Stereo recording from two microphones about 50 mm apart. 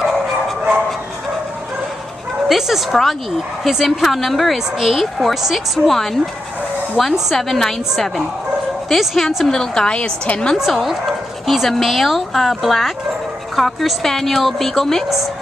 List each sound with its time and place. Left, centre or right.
2.4 s a woman's voice: centre
8.8 s a woman's voice: centre
10.2 s a woman's voice: left
10.6 s a woman's voice: centre